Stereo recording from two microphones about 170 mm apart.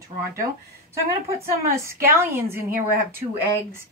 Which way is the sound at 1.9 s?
15° right (ahead or behind).